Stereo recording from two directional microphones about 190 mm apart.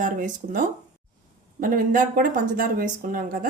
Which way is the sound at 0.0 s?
45° right (ahead or behind).